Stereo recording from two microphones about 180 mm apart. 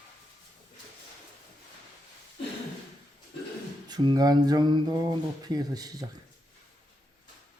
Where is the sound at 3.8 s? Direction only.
25° right (ahead or behind).